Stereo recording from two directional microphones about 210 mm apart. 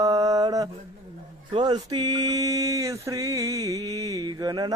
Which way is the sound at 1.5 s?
20° right (ahead or behind).